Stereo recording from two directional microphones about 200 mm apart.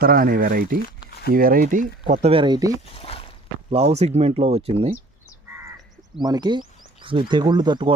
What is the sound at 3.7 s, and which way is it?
Speech, 30° right (ahead or behind).